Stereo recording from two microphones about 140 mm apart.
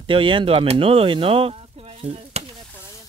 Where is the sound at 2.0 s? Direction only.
45° right (ahead or behind).